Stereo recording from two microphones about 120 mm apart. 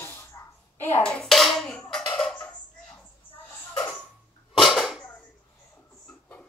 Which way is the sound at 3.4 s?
10° left (ahead or behind).